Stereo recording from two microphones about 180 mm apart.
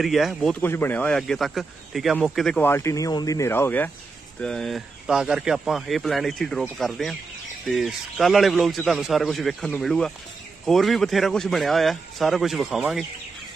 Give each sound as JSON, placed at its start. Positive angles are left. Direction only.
{"t": 0.0, "sound": "speech", "side_deg": 0}
{"t": 2.7, "sound": "speech", "side_deg": 15}